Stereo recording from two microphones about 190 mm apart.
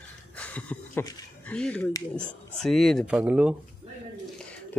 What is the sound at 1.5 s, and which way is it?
Speech, 5° left (ahead or behind).